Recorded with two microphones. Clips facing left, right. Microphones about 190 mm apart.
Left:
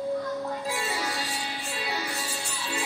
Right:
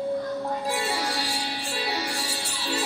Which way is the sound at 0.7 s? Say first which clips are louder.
Right 3 dB; 70° right (ahead or behind).